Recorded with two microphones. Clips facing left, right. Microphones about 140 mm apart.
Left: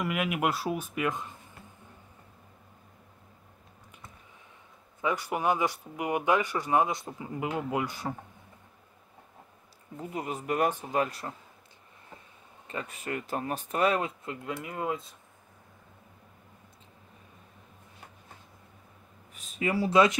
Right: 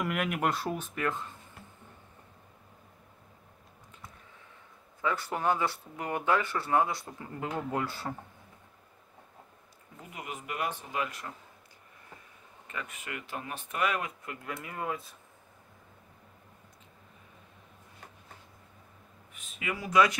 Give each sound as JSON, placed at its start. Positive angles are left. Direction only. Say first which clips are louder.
{"t": 0.0, "sound": "speech", "louder": "left 1 dB", "side_deg": 5}
{"t": 5.0, "sound": "speech", "louder": "left 2 dB", "side_deg": 15}
{"t": 9.9, "sound": "speech", "louder": "left 7 dB", "side_deg": 35}
{"t": 12.6, "sound": "speech", "louder": "left 5 dB", "side_deg": 30}
{"t": 19.3, "sound": "speech", "louder": "left 8 dB", "side_deg": 35}